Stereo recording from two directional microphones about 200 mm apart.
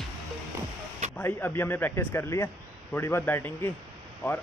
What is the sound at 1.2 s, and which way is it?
A man's voice, 10° left (ahead or behind).